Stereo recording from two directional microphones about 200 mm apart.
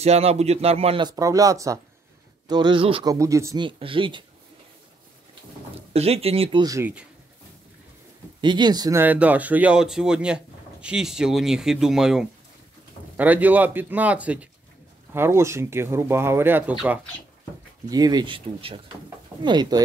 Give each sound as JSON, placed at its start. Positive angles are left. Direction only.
{"t": 0.0, "sound": "speech", "side_deg": -30}
{"t": 5.9, "sound": "speech", "side_deg": -30}
{"t": 8.4, "sound": "speech", "side_deg": -20}
{"t": 17.8, "sound": "speech", "side_deg": -20}